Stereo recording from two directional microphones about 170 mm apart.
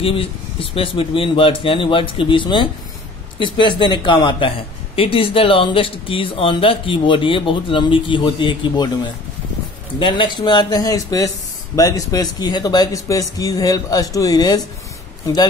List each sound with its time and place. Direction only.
0.0 s speech: 30° left (ahead or behind)
9.9 s speech: 30° left (ahead or behind)